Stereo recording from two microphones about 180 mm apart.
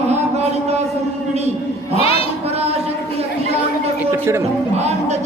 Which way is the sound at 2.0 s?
30° left (ahead or behind).